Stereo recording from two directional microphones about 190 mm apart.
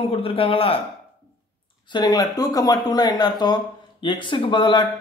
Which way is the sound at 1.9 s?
20° left (ahead or behind).